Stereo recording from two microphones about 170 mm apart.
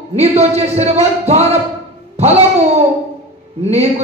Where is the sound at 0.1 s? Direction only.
40° right (ahead or behind).